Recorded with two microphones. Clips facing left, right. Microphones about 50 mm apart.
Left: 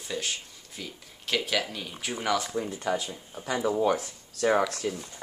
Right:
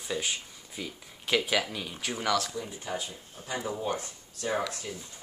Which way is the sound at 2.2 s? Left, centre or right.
Centre.